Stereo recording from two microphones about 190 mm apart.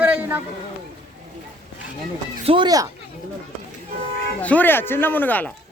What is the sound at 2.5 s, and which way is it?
Speech, 25° right (ahead or behind).